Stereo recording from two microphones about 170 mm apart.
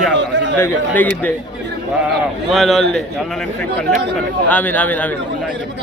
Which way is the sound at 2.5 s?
Centre (ahead or behind).